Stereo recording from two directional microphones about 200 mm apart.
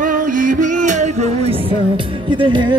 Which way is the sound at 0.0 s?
45° right (ahead or behind).